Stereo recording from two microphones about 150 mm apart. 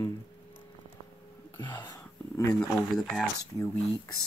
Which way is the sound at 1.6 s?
30° left (ahead or behind).